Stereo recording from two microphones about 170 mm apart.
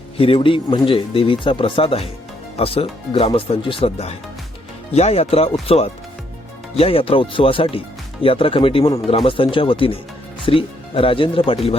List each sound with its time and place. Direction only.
0.2 s speech: 30° left (ahead or behind)